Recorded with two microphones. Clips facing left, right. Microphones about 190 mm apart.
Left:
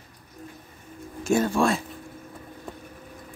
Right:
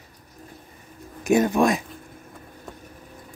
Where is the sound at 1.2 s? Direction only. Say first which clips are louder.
Right 3 dB; 20° right (ahead or behind).